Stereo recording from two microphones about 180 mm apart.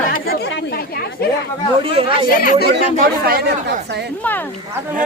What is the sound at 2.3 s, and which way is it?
Speech, 50° left (ahead or behind).